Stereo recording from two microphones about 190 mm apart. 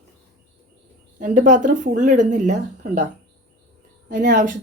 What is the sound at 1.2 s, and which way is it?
Speech, 40° right (ahead or behind).